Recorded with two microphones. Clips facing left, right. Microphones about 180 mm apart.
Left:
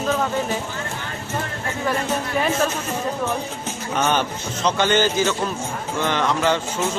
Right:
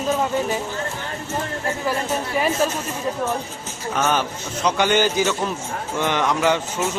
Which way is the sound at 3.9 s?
5° right (ahead or behind).